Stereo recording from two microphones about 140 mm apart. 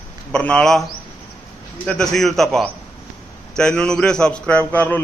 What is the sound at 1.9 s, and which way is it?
A man's voice, 5° left (ahead or behind).